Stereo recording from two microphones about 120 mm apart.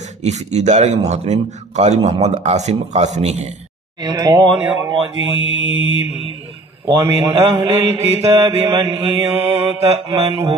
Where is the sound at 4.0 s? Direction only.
40° right (ahead or behind).